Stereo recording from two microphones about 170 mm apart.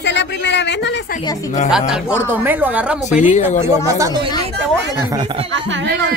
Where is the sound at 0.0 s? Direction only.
90° left.